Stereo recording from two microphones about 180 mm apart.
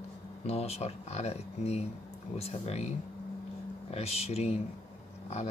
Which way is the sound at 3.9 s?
35° left (ahead or behind).